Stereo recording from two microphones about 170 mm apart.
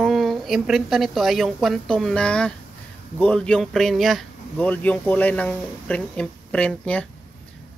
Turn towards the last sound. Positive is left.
turn(degrees=5)  # may be behind; listen again after turning